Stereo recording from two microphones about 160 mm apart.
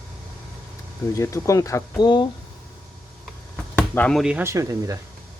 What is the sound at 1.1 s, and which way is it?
Speech, 20° left (ahead or behind).